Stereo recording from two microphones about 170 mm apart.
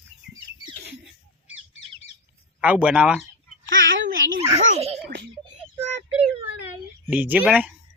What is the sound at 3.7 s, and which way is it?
Speech, 90° right.